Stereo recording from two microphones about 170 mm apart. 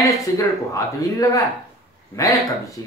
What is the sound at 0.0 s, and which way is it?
Speech, 20° left (ahead or behind).